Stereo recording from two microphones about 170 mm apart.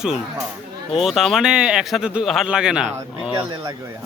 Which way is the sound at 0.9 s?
Centre (ahead or behind).